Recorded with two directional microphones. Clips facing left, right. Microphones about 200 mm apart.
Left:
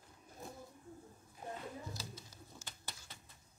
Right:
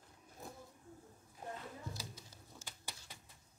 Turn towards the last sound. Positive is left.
turn(degrees=-10)  # may be behind; listen again after turning